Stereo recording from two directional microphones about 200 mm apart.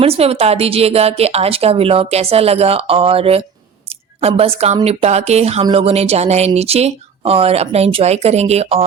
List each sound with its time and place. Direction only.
0.0 s a woman's voice: 30° right (ahead or behind)